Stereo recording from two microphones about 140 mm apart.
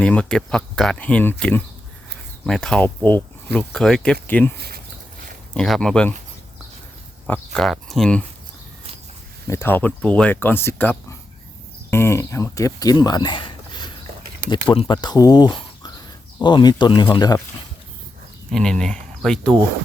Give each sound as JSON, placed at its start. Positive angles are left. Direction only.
{"t": 0.0, "sound": "speech", "side_deg": 5}
{"t": 5.5, "sound": "speech", "side_deg": 5}
{"t": 7.3, "sound": "speech", "side_deg": 5}
{"t": 9.5, "sound": "speech", "side_deg": 15}
{"t": 18.5, "sound": "speech", "side_deg": 5}